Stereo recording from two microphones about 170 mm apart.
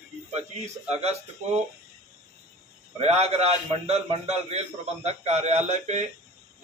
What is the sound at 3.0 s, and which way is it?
A man's voice, 40° right (ahead or behind).